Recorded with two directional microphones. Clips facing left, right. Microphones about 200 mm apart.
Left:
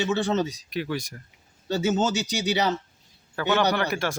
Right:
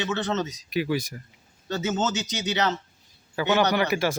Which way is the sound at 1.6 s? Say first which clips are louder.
Left 3 dB; 10° left (ahead or behind).